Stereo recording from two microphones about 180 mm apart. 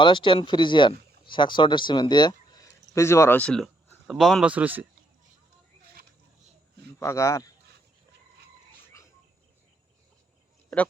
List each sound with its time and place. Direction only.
0.0 s a man's voice: 25° left (ahead or behind); by 4.9 s 10° right (ahead or behind)
7.0 s speech: 15° left (ahead or behind)